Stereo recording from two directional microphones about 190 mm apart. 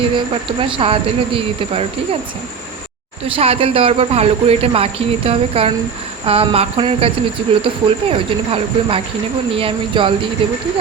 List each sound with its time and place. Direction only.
0.6 s speech: 25° right (ahead or behind)
3.2 s speech: 30° right (ahead or behind)